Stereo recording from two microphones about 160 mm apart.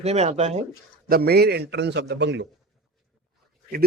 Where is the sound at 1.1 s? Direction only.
80° right.